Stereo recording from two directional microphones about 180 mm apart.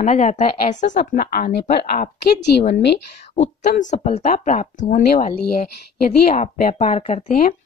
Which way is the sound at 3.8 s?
40° left (ahead or behind).